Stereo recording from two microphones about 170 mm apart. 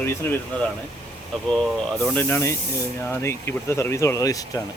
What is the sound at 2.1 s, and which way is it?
Speech, 15° left (ahead or behind).